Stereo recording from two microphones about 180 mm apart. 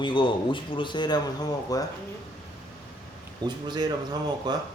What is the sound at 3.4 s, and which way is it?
Speech, 25° right (ahead or behind).